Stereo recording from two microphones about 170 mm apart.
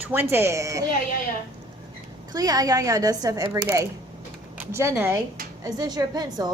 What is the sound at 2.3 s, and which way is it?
A woman's voice, 20° right (ahead or behind).